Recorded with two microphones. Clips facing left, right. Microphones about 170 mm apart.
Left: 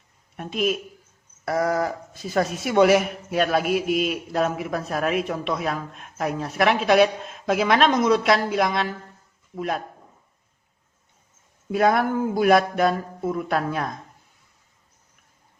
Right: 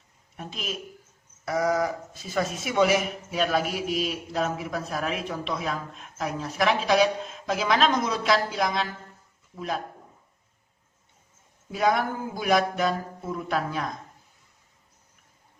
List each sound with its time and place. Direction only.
0.3 s a man's voice: 60° left (ahead or behind)
11.7 s a man's voice: 60° left (ahead or behind)